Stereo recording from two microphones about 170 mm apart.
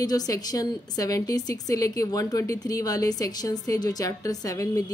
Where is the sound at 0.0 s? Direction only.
20° left (ahead or behind).